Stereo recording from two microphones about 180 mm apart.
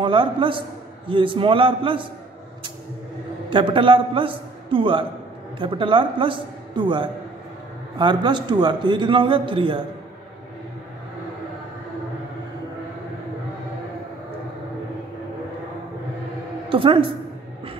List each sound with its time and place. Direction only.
0.0 s a man's voice: 25° right (ahead or behind)
3.4 s a man's voice: 30° right (ahead or behind)
16.6 s a woman's voice: 30° right (ahead or behind)